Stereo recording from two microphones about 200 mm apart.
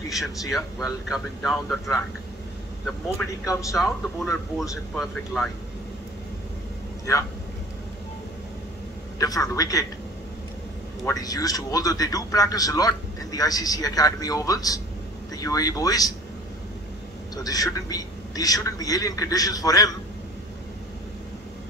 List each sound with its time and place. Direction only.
0.5 s speech: centre (ahead or behind)
3.2 s speech: centre (ahead or behind)
7.1 s a man's voice: 15° left (ahead or behind)
9.2 s a man's voice: 15° left (ahead or behind)
11.1 s a man's voice: 20° left (ahead or behind)
17.4 s a man's voice: 20° left (ahead or behind)